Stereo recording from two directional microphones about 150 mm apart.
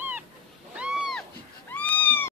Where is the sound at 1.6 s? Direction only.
10° left (ahead or behind).